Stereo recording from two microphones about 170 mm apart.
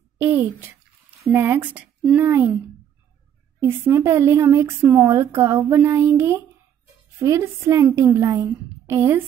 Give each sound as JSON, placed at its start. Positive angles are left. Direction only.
{"t": 0.2, "sound": "speech", "side_deg": -15}
{"t": 3.6, "sound": "speech", "side_deg": -15}